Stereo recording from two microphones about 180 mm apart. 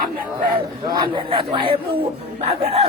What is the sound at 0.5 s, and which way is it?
A man's voice, 25° right (ahead or behind).